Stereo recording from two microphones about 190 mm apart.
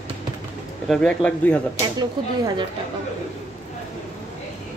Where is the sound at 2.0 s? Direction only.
20° right (ahead or behind).